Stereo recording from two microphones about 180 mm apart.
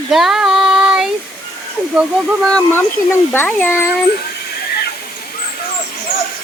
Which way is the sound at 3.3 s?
10° left (ahead or behind).